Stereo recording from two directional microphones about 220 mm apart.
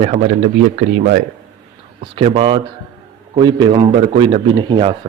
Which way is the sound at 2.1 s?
25° right (ahead or behind).